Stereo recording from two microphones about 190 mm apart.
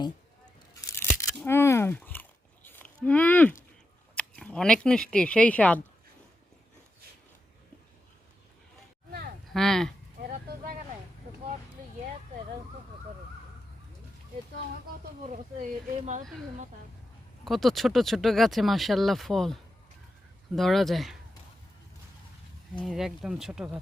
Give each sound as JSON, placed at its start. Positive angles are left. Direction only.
{"t": 0.8, "sound": "tearing", "side_deg": 10}
{"t": 1.5, "sound": "a sound", "side_deg": 15}
{"t": 3.0, "sound": "speech", "side_deg": 5}
{"t": 4.1, "sound": "a sound", "side_deg": 5}
{"t": 5.1, "sound": "speech", "side_deg": 5}
{"t": 9.5, "sound": "speech", "side_deg": 5}
{"t": 10.2, "sound": "vehicle", "side_deg": -45}
{"t": 15.2, "sound": "speech", "side_deg": -40}
{"t": 17.4, "sound": "speech", "side_deg": 0}
{"t": 20.6, "sound": "speech", "side_deg": 0}
{"t": 22.8, "sound": "speech", "side_deg": 0}